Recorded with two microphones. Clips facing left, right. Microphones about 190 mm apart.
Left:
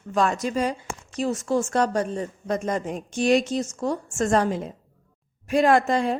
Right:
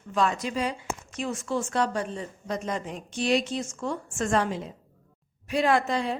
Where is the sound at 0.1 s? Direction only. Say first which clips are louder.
Left 3 dB; 45° left (ahead or behind).